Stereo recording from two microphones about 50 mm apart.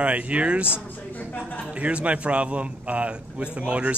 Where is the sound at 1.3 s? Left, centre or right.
Left.